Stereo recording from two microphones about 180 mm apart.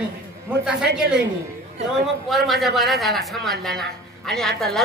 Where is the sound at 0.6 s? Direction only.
5° right (ahead or behind).